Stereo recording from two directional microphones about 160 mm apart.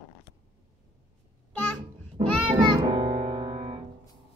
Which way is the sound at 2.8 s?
25° right (ahead or behind).